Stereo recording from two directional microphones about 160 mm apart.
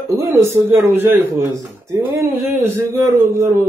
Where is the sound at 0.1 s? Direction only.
15° right (ahead or behind).